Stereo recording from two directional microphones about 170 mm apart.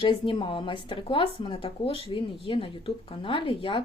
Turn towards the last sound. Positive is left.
turn(degrees=30)  # may be behind; listen again after turning